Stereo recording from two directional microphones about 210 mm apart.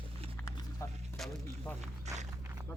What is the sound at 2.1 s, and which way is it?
Walk, 35° right (ahead or behind).